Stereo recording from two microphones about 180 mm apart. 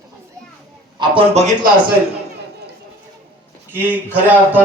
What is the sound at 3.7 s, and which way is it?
Speech, 10° right (ahead or behind).